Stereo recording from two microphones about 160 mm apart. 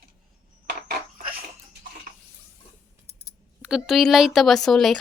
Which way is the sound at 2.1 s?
60° right (ahead or behind).